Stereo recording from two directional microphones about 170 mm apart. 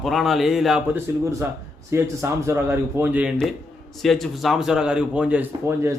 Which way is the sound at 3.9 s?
Centre (ahead or behind).